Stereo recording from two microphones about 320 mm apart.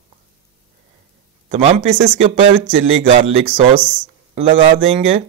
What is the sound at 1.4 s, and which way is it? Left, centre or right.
Speech, right.